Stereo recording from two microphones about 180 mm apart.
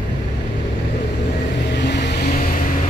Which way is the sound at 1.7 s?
70° left (ahead or behind).